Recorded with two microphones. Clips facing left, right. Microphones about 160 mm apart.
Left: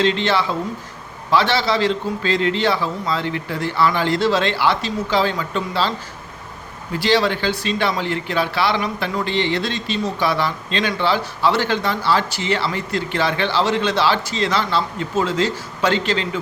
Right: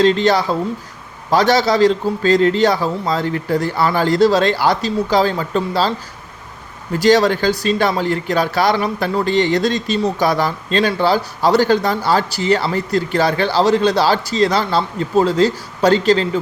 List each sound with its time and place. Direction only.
0.0 s speech: 40° right (ahead or behind)
6.9 s speech: 45° right (ahead or behind)